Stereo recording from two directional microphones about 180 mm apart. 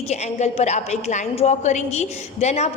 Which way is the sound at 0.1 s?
40° left (ahead or behind).